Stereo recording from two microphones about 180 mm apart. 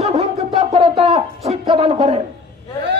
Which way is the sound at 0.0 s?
35° right (ahead or behind).